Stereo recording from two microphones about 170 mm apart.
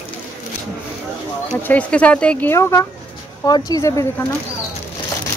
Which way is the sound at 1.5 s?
10° left (ahead or behind).